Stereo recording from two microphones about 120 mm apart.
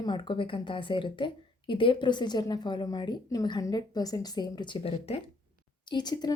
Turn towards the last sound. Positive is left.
turn(degrees=35)  # may be behind; listen again after turning